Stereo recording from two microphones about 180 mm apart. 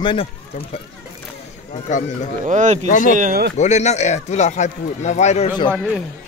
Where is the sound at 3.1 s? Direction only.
45° right (ahead or behind).